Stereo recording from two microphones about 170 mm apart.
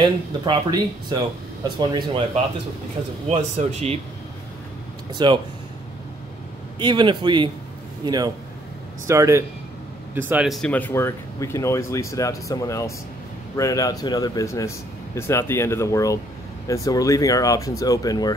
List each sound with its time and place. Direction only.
0.0 s a man's voice: 25° right (ahead or behind)
3.3 s speech: 35° right (ahead or behind)
5.1 s a man's voice: 25° right (ahead or behind)
6.8 s a man's voice: 25° right (ahead or behind); by 18.3 s 20° left (ahead or behind)